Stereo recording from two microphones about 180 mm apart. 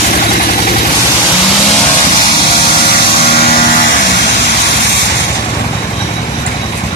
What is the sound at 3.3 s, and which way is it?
Vehicle, 60° left (ahead or behind).